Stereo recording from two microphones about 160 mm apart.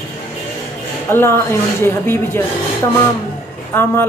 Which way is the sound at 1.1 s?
15° left (ahead or behind).